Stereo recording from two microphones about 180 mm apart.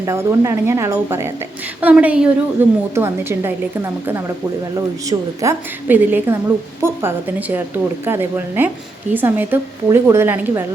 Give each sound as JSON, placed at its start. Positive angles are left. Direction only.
{"t": 0.0, "sound": "a woman's voice", "side_deg": -15}